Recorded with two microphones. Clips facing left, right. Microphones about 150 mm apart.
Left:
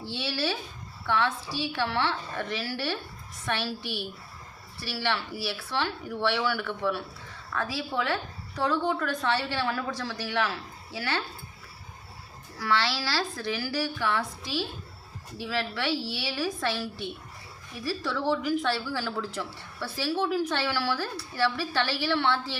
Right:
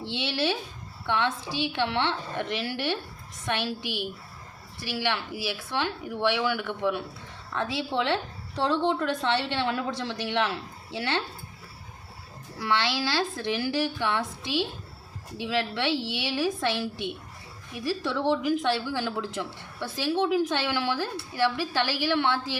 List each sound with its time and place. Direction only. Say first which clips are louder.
0.0 s a woman's voice: right 2 dB; 20° right (ahead or behind)
12.5 s speech: right 1 dB; 20° right (ahead or behind)